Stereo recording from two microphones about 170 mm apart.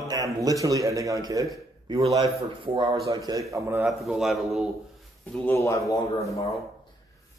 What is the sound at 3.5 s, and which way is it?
Speech, 15° right (ahead or behind).